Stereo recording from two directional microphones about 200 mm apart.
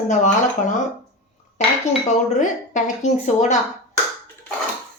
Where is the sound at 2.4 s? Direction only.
35° left (ahead or behind).